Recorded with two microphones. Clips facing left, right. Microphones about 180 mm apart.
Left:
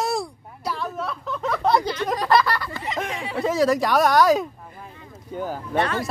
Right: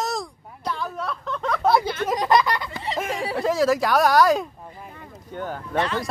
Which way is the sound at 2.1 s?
20° right (ahead or behind).